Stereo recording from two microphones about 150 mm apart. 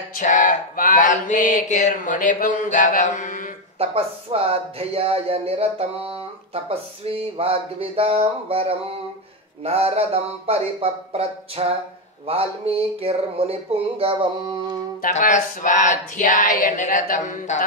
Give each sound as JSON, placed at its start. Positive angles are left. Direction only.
{"t": 0.1, "sound": "mantra", "side_deg": 60}
{"t": 3.8, "sound": "speech", "side_deg": -40}
{"t": 15.0, "sound": "mantra", "side_deg": 60}